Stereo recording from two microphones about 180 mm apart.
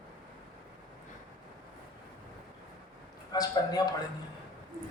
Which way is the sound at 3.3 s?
20° left (ahead or behind).